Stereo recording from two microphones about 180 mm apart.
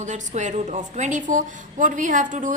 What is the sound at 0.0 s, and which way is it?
A woman's voice, 40° right (ahead or behind).